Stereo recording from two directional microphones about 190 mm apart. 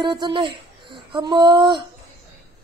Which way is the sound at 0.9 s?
25° right (ahead or behind).